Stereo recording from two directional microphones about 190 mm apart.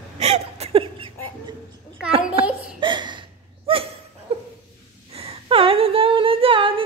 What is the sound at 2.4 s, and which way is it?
Laughter, 30° right (ahead or behind).